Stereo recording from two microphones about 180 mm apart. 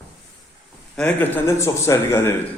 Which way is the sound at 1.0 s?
10° left (ahead or behind).